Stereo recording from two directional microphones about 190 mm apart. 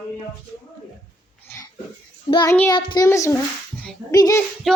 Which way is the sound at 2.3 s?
20° left (ahead or behind).